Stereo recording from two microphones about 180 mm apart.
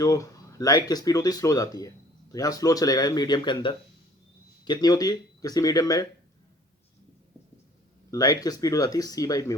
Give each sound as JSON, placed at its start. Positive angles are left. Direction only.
{"t": 0.0, "sound": "speech", "side_deg": 20}
{"t": 8.1, "sound": "speech", "side_deg": 20}